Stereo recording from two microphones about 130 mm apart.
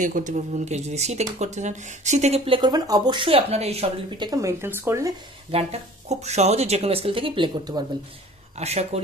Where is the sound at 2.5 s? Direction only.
35° right (ahead or behind); by 3.9 s 55° right (ahead or behind).